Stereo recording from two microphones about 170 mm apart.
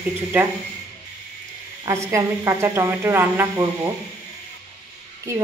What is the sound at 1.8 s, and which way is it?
A woman's voice, 15° right (ahead or behind).